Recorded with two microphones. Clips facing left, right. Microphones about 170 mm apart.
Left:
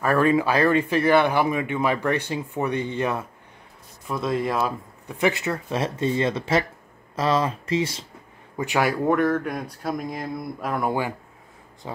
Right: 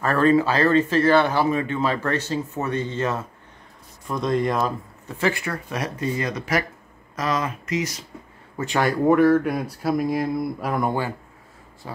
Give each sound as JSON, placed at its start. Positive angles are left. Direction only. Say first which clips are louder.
{"t": 0.0, "sound": "speech", "louder": "right 1 dB", "side_deg": 10}
{"t": 8.5, "sound": "speech", "louder": "right 1 dB", "side_deg": 10}
{"t": 10.9, "sound": "speech", "louder": "even", "side_deg": 15}